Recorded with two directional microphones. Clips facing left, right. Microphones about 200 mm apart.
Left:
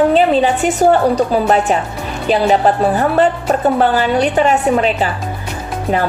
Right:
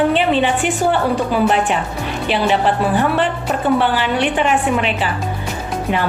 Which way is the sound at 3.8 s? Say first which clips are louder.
Left 4 dB; 40° left (ahead or behind).